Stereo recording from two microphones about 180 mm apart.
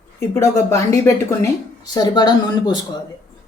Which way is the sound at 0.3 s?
15° left (ahead or behind).